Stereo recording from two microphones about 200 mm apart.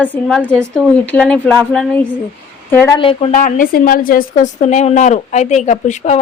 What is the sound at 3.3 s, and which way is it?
A woman's voice, 40° left (ahead or behind).